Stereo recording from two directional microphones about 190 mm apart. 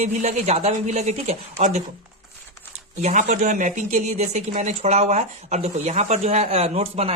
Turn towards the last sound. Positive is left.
turn(degrees=-30)  # may be behind; listen again after turning